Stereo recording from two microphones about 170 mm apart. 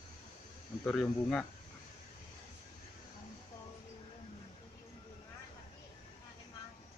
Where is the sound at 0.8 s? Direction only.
5° left (ahead or behind).